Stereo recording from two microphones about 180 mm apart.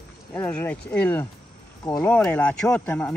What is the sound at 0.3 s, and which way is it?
Speech, 10° left (ahead or behind).